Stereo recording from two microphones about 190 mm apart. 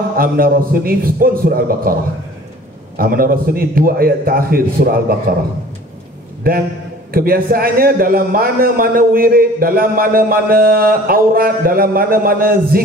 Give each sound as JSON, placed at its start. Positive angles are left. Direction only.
{"t": 0.2, "sound": "a man's voice", "side_deg": -50}
{"t": 3.0, "sound": "a man's voice", "side_deg": -50}
{"t": 6.5, "sound": "a man's voice", "side_deg": -50}